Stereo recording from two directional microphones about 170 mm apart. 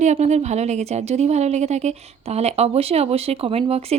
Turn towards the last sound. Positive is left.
turn(degrees=-35)  # may be behind; listen again after turning